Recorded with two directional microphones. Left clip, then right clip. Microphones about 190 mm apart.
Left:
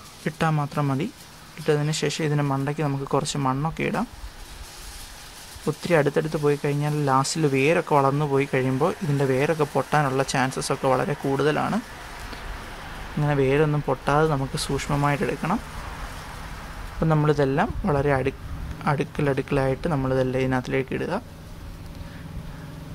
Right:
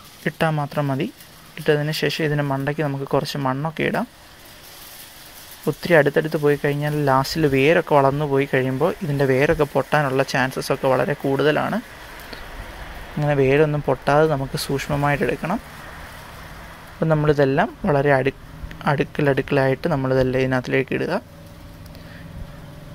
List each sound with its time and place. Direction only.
0.2 s speech: 5° right (ahead or behind)
5.7 s speech: 10° right (ahead or behind)
13.2 s speech: 15° right (ahead or behind)
17.0 s speech: 10° right (ahead or behind)